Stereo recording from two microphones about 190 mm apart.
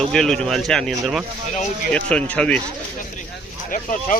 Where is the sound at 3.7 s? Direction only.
45° left (ahead or behind).